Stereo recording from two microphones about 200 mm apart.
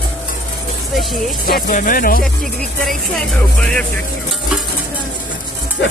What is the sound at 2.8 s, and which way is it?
Speech, 5° left (ahead or behind).